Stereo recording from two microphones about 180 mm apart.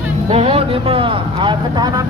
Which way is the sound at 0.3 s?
35° right (ahead or behind).